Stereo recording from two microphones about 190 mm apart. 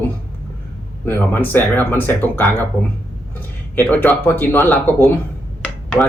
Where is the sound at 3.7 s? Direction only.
10° left (ahead or behind).